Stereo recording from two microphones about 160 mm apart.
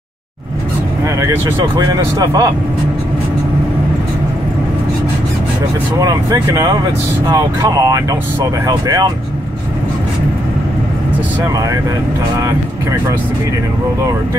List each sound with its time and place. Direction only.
1.0 s speech: 15° right (ahead or behind)
5.9 s speech: 25° right (ahead or behind)
11.4 s speech: 20° right (ahead or behind)